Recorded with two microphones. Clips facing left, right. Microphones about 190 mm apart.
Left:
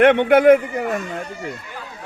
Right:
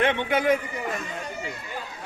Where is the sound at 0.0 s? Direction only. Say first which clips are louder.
Left 11 dB; 65° left (ahead or behind).